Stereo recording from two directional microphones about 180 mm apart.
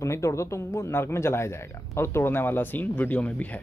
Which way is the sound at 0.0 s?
15° left (ahead or behind).